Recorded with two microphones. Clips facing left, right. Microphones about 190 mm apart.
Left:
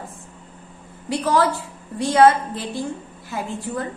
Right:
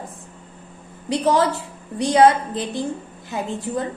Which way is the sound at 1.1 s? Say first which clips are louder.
Right 1 dB; 20° right (ahead or behind).